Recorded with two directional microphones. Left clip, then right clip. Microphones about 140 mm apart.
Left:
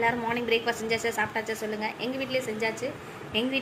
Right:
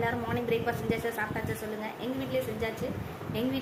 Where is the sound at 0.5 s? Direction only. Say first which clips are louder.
Left 4 dB; 25° left (ahead or behind).